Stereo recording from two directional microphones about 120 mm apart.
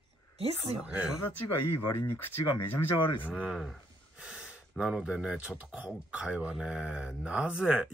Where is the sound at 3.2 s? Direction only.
10° right (ahead or behind).